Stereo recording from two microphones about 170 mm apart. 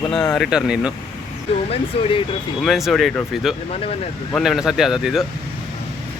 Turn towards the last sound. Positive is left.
turn(degrees=0)  # may be behind; listen again after turning